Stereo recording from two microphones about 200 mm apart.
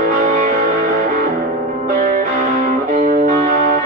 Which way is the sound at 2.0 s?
40° right (ahead or behind).